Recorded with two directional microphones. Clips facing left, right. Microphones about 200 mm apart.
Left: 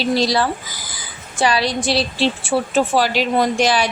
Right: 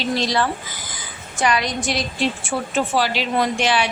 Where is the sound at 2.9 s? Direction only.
45° left (ahead or behind).